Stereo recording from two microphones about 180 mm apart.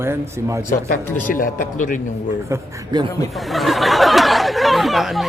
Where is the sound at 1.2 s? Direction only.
50° left (ahead or behind).